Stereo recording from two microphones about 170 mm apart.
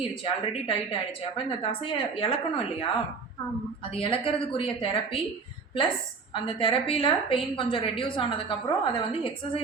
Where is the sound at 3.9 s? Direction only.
35° left (ahead or behind).